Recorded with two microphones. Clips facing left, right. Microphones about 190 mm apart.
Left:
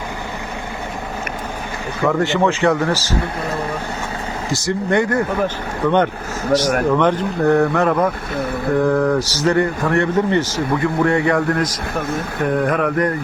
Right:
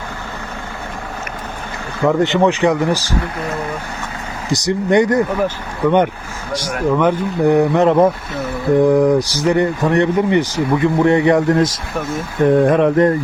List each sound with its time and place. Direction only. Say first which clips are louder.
2.0 s speech: right 3 dB; 20° right (ahead or behind)
4.5 s speech: right 4 dB; 15° right (ahead or behind)